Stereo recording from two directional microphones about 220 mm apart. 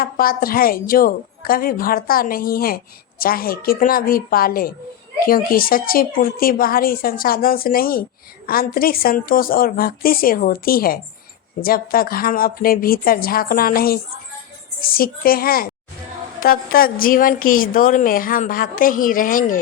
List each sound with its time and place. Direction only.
0.0 s a woman's voice: 40° left (ahead or behind)